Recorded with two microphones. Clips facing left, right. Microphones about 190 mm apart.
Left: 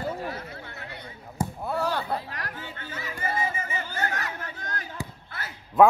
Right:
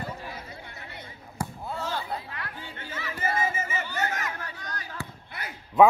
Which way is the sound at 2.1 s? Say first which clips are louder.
Left 3 dB; 40° left (ahead or behind).